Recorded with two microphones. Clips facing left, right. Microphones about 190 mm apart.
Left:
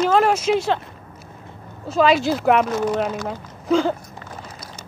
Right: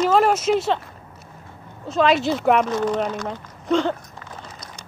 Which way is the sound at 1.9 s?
Centre (ahead or behind).